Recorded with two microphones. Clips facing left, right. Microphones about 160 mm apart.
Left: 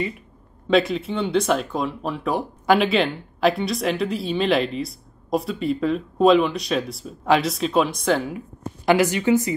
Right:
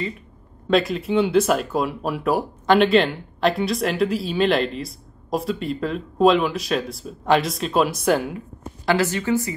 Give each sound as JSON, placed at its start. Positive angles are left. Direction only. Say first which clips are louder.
{"t": 0.7, "sound": "speech", "louder": "even", "side_deg": 0}
{"t": 2.6, "sound": "speech", "louder": "right 2 dB", "side_deg": 5}
{"t": 8.8, "sound": "a woman's voice", "louder": "left 3 dB", "side_deg": 15}